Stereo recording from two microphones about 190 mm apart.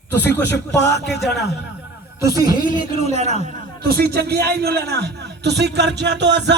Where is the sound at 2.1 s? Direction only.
15° right (ahead or behind); by 3.2 s 35° right (ahead or behind).